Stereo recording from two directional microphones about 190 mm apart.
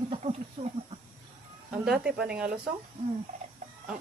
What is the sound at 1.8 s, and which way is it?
Speech, 5° right (ahead or behind).